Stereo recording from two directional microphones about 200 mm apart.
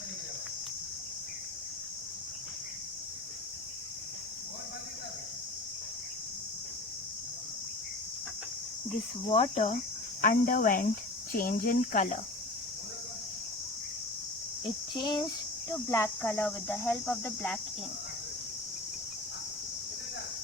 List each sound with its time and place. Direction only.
9.3 s speech: 30° left (ahead or behind)
10.2 s speech: 45° left (ahead or behind)
14.9 s speech: 20° left (ahead or behind)